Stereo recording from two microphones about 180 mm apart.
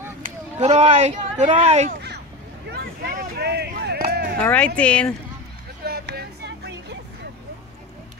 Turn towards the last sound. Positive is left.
turn(degrees=-70)  # may be behind; listen again after turning